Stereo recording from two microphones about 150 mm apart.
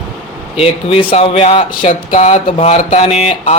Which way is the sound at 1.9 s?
50° left (ahead or behind).